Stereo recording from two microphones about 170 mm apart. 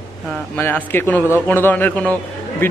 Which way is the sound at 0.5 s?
10° left (ahead or behind).